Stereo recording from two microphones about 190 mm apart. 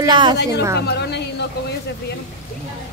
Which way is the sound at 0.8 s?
60° left (ahead or behind).